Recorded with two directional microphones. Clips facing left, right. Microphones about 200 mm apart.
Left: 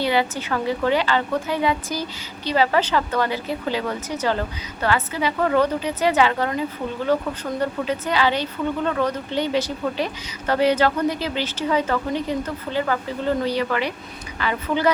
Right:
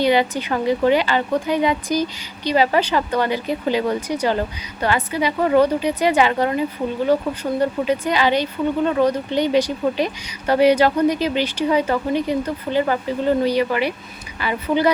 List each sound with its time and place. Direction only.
0.0 s a woman's voice: 20° right (ahead or behind)